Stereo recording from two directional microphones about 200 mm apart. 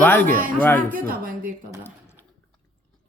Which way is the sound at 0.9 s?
45° right (ahead or behind).